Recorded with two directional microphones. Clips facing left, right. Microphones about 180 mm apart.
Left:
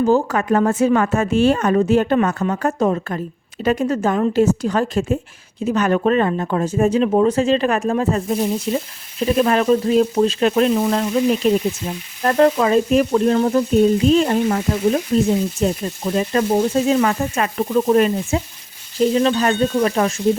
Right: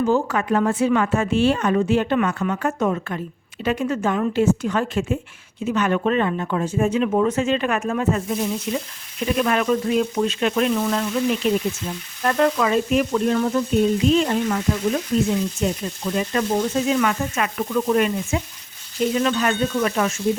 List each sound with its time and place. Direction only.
0.0 s a woman's voice: 40° left (ahead or behind)